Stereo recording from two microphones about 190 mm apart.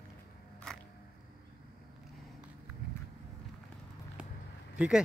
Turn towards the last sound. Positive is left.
turn(degrees=-5)  # may be behind; listen again after turning